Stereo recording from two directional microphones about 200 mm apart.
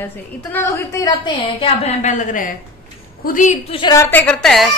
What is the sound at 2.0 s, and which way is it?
A woman's voice, 40° left (ahead or behind).